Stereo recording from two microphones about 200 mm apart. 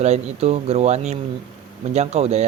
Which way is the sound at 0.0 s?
35° right (ahead or behind).